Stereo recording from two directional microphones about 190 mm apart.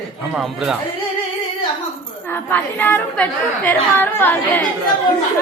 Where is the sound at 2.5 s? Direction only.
10° left (ahead or behind).